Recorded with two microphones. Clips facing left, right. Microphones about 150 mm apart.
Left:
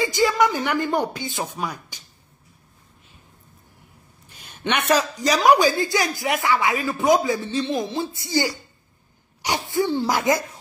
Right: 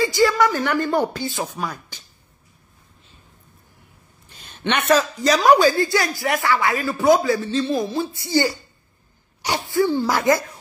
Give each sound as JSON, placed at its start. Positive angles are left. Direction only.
{"t": 0.0, "sound": "speech", "side_deg": 20}
{"t": 4.3, "sound": "speech", "side_deg": 10}
{"t": 9.4, "sound": "speech", "side_deg": 20}